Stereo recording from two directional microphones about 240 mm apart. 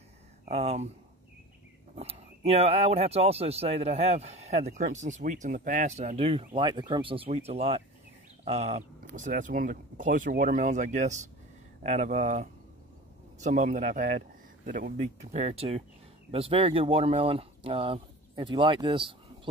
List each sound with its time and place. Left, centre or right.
0.5 s speech: right
2.0 s speech: right